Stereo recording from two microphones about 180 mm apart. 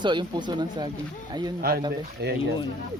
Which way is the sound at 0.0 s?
25° right (ahead or behind).